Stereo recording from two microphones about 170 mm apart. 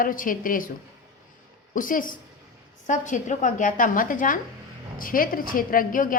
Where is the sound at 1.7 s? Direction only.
50° left (ahead or behind).